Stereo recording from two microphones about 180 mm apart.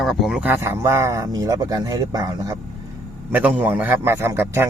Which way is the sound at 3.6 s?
10° right (ahead or behind).